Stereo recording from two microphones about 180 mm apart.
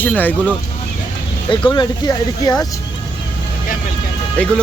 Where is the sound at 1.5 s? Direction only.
25° left (ahead or behind).